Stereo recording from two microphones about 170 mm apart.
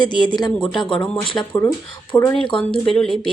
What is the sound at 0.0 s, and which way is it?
Speech, 25° left (ahead or behind).